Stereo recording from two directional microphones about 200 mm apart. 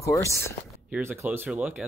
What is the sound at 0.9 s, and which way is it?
Speech, 10° right (ahead or behind).